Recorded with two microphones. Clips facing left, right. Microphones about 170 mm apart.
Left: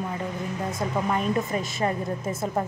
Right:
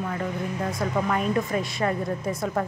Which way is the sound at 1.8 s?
25° left (ahead or behind).